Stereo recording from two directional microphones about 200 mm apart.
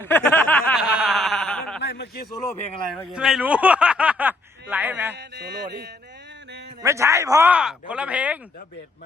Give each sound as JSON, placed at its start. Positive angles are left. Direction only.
{"t": 0.0, "sound": "snicker", "side_deg": 10}
{"t": 0.8, "sound": "wail", "side_deg": -5}
{"t": 1.8, "sound": "a sound", "side_deg": 55}
{"t": 2.9, "sound": "snicker", "side_deg": -5}
{"t": 5.1, "sound": "music", "side_deg": -60}
{"t": 6.8, "sound": "speech", "side_deg": -15}